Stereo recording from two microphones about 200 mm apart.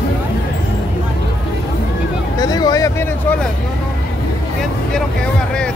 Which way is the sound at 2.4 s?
20° left (ahead or behind).